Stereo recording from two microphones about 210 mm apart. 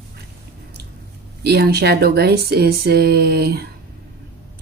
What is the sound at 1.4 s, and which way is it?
Speech, 50° right (ahead or behind).